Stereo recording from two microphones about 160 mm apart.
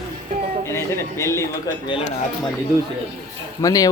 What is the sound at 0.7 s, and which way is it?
A man's voice, 15° left (ahead or behind).